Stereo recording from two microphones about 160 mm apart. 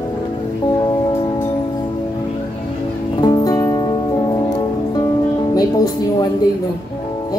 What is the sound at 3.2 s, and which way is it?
Music, 25° left (ahead or behind).